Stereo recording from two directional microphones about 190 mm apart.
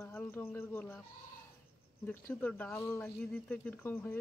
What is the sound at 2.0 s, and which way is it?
Speech, 10° left (ahead or behind).